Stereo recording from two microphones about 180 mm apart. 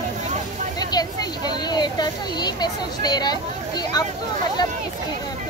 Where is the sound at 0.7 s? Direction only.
20° left (ahead or behind).